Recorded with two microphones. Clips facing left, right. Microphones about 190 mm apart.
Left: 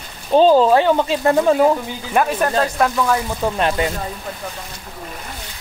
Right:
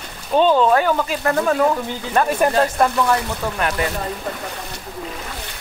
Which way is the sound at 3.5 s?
25° left (ahead or behind).